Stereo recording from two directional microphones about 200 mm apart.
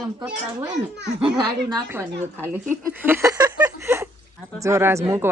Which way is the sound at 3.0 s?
15° right (ahead or behind).